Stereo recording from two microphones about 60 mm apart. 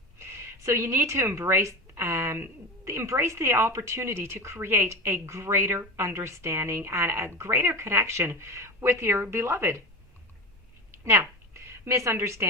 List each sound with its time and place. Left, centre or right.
0.2 s speech: right
2.0 s speech: right
10.9 s a sound: right